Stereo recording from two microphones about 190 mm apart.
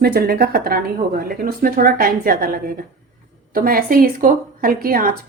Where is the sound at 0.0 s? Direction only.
55° right (ahead or behind).